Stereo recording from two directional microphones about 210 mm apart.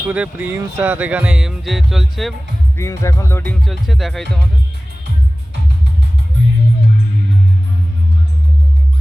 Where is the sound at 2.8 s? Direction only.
15° left (ahead or behind).